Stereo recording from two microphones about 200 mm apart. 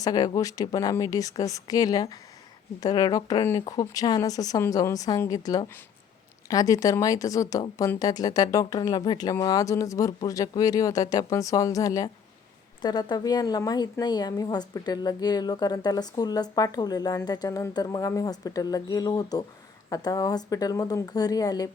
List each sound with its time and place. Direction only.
0.0 s a woman's voice: 20° left (ahead or behind)